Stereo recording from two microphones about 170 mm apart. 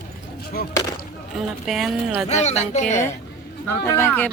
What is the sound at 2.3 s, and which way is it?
Speech, 40° left (ahead or behind).